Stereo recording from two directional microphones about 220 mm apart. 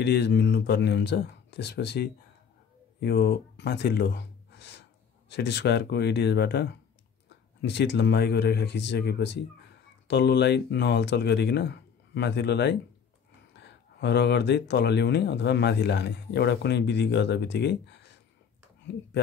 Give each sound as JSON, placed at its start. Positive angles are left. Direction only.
{"t": 0.0, "sound": "speech", "side_deg": 50}